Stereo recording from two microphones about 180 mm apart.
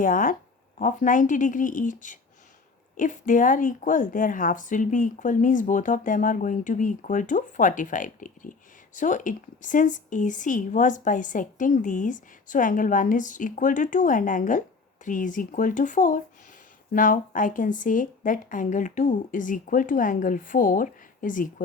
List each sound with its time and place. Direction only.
0.0 s a woman's voice: 50° left (ahead or behind)